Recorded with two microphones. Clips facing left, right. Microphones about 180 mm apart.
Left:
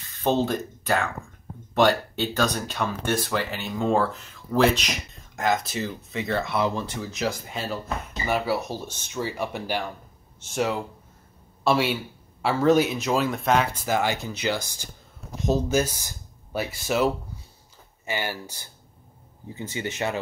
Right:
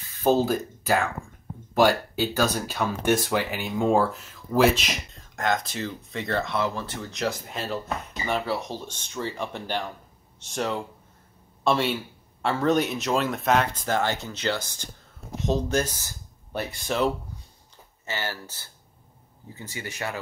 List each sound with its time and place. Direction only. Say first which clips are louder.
0.2 s speech: right 2 dB; 5° right (ahead or behind)
3.1 s speech: right 5 dB; 20° right (ahead or behind); by 6.6 s 5° left (ahead or behind)
6.6 s speech: left 2 dB; 20° left (ahead or behind)
7.0 s speech: left 1 dB; 5° left (ahead or behind); by 20.2 s 20° left (ahead or behind)